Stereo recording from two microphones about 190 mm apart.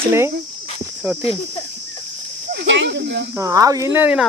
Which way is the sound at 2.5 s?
65° right (ahead or behind).